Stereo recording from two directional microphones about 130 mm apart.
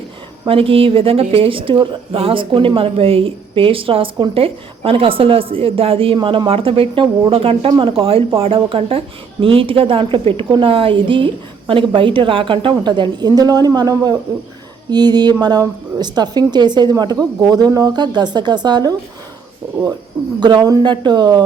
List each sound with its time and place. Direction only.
0.4 s a woman's voice: 45° right (ahead or behind)
20.4 s a woman's voice: 35° right (ahead or behind)